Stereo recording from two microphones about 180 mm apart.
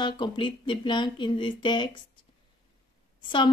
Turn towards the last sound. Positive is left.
turn(degrees=25)  # may be behind; listen again after turning